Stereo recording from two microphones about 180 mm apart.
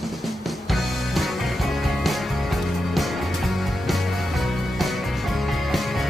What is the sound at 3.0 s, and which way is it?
Music, centre (ahead or behind).